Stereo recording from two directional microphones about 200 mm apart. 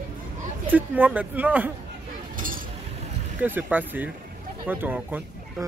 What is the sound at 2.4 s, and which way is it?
Chink, 45° right (ahead or behind).